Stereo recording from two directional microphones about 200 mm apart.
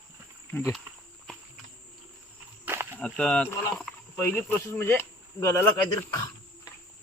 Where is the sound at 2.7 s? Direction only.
10° right (ahead or behind).